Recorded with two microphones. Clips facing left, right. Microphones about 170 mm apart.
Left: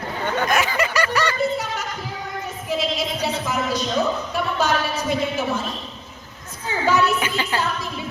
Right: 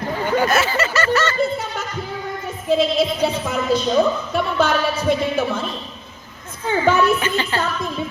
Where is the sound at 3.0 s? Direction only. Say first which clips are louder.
Right 6 dB; 55° right (ahead or behind).